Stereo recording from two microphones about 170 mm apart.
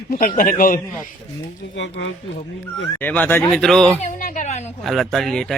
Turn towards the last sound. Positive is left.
turn(degrees=0)  # may be behind; listen again after turning